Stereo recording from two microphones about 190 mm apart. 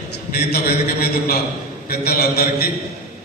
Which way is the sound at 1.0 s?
50° left (ahead or behind).